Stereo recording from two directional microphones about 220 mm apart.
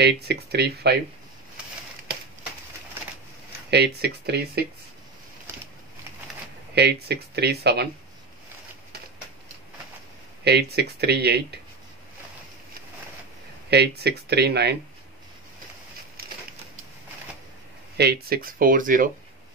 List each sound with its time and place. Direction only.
0.0 s speech: 45° right (ahead or behind)
3.7 s speech: 50° right (ahead or behind)
6.7 s speech: 50° right (ahead or behind)
10.4 s speech: 50° right (ahead or behind)
13.7 s speech: 50° right (ahead or behind)
16.2 s a sound: 45° right (ahead or behind)
17.9 s speech: 45° right (ahead or behind)